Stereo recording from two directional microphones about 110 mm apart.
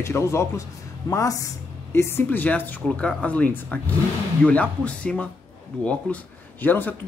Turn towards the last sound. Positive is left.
turn(degrees=15)  # may be behind; listen again after turning